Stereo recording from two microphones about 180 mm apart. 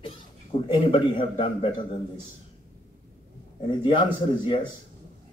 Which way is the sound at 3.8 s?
30° left (ahead or behind).